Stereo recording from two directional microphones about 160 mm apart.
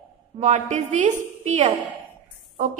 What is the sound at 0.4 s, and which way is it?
A woman's voice, 50° right (ahead or behind).